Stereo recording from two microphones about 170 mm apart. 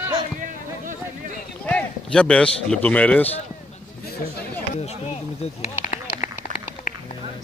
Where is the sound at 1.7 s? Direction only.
5° left (ahead or behind).